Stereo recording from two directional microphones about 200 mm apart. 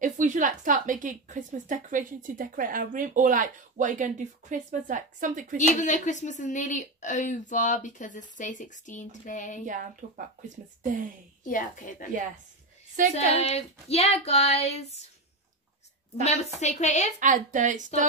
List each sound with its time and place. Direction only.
0.0 s a woman's voice: 40° right (ahead or behind)
5.6 s a woman's voice: 40° left (ahead or behind)
9.7 s a woman's voice: 40° right (ahead or behind)
11.4 s a woman's voice: 40° left (ahead or behind)
13.0 s a woman's voice: 40° right (ahead or behind)
13.3 s a woman's voice: 30° left (ahead or behind)
16.5 s a woman's voice: 35° left (ahead or behind)
17.2 s a woman's voice: 40° right (ahead or behind)